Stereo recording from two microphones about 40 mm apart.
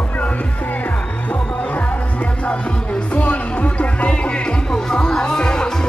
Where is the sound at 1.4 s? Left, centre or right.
Left.